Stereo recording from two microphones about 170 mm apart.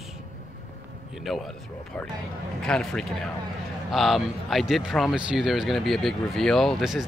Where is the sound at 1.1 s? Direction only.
Centre (ahead or behind).